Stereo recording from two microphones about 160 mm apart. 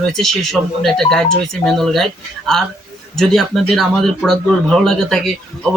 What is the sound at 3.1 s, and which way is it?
Speech, centre (ahead or behind).